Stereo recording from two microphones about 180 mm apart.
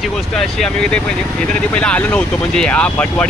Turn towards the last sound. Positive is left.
turn(degrees=5)  # may be behind; listen again after turning